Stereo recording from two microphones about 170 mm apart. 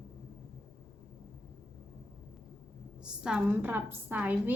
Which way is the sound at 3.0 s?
5° right (ahead or behind).